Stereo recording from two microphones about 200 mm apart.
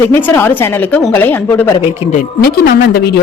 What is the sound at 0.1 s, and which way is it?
A woman's voice, 10° left (ahead or behind).